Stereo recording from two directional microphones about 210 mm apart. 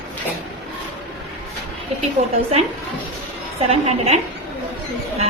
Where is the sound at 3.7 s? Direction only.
30° right (ahead or behind).